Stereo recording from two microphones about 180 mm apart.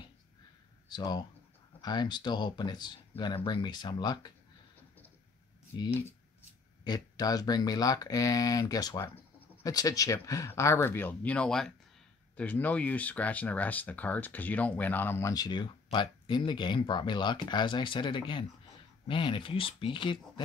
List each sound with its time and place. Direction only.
0.8 s speech: 25° left (ahead or behind)
5.7 s speech: 25° left (ahead or behind)